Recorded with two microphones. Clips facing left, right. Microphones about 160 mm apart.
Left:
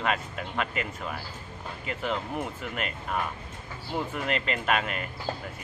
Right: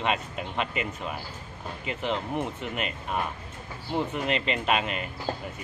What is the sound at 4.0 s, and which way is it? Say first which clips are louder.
Speech: right 2 dB; 15° right (ahead or behind).